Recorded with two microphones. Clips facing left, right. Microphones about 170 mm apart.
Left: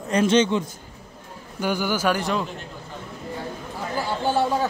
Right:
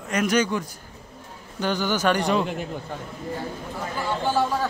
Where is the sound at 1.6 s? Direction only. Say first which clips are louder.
Even; 10° left (ahead or behind).